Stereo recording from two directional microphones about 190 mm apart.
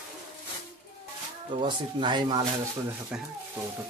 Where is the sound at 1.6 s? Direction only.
25° right (ahead or behind).